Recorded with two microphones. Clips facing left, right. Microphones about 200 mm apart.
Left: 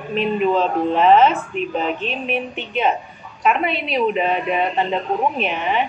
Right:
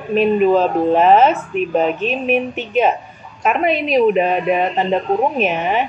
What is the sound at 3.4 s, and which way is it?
A woman's voice, 45° right (ahead or behind).